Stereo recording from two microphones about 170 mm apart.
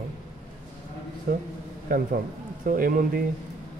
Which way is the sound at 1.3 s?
60° right (ahead or behind).